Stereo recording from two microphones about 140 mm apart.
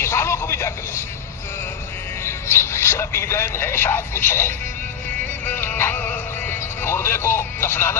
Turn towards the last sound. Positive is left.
turn(degrees=15)  # may be behind; listen again after turning